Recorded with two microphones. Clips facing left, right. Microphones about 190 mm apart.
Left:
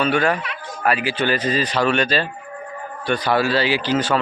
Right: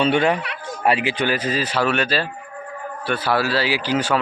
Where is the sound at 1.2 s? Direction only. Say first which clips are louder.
Left 1 dB; 10° right (ahead or behind).